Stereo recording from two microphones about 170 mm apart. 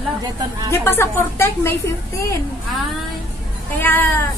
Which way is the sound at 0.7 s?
15° left (ahead or behind).